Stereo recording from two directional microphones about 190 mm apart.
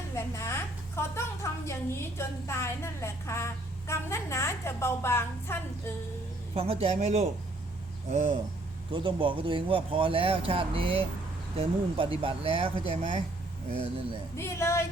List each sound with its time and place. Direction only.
0.2 s a woman's voice: 15° left (ahead or behind)
6.5 s speech: 30° right (ahead or behind)
8.9 s speech: 25° right (ahead or behind)
14.3 s a woman's voice: 15° left (ahead or behind)